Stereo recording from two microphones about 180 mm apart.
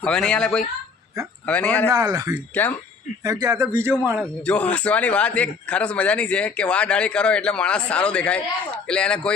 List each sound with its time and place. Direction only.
0.0 s a man's voice: 5° left (ahead or behind)
1.9 s speech: 20° right (ahead or behind)
4.2 s a man's voice: 5° left (ahead or behind)